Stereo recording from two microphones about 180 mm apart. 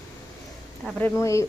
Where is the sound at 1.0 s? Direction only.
10° left (ahead or behind).